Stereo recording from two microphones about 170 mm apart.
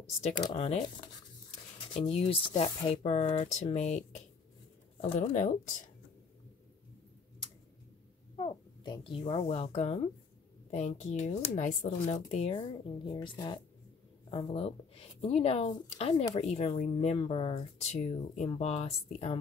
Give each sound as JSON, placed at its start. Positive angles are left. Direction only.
{"t": 0.6, "sound": "speech", "side_deg": 35}
{"t": 5.0, "sound": "speech", "side_deg": 35}
{"t": 8.4, "sound": "speech", "side_deg": 25}
{"t": 12.5, "sound": "speech", "side_deg": 25}